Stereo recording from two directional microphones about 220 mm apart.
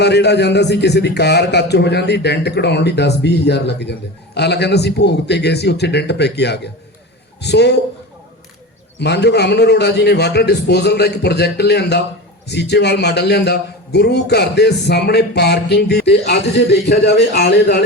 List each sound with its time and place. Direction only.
0.0 s a man's voice: 50° left (ahead or behind)
9.0 s a man's voice: 50° left (ahead or behind)